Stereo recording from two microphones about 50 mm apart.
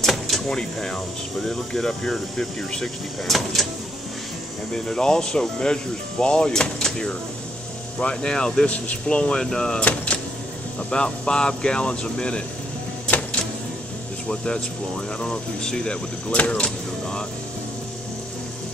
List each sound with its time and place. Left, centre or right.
0.0 s door: centre
0.6 s speech: centre
4.7 s speech: centre
8.6 s speech: left
10.9 s speech: centre
13.0 s a sound: left
14.3 s speech: centre